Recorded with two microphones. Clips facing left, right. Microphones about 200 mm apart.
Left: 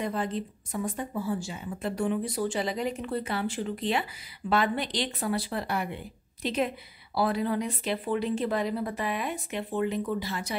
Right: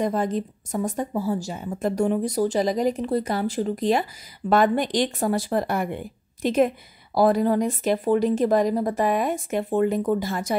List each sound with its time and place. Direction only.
0.0 s speech: 45° right (ahead or behind)